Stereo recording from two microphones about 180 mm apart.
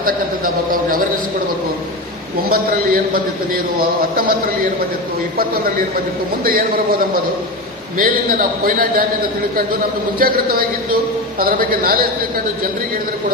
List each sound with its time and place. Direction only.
0.0 s a sound: 50° right (ahead or behind)
2.5 s a man's voice: 55° right (ahead or behind)
6.4 s a man's voice: 55° right (ahead or behind)
7.9 s a man's voice: 50° right (ahead or behind)
10.2 s a man's voice: 55° right (ahead or behind)